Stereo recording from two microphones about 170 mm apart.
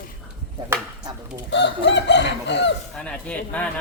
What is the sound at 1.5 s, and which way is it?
Chicken, 90° left.